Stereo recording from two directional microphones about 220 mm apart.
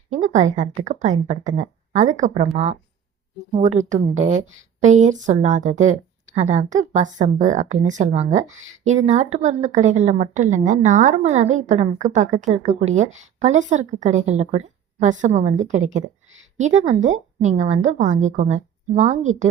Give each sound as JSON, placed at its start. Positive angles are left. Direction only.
{"t": 0.1, "sound": "a woman's voice", "side_deg": -30}